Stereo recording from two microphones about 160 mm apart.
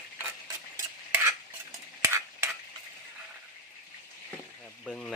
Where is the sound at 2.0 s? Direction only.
15° right (ahead or behind).